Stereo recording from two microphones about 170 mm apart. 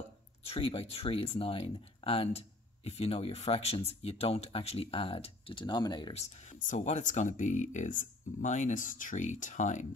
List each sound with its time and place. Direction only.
0.5 s speech: 35° left (ahead or behind)
6.1 s speech: 40° left (ahead or behind)